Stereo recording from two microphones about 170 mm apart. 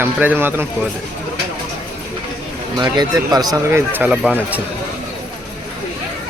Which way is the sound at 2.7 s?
25° right (ahead or behind).